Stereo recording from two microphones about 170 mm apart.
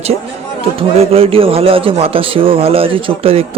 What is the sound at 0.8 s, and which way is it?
Speech, 35° right (ahead or behind).